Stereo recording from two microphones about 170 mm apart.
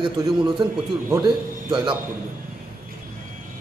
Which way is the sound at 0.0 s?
25° right (ahead or behind).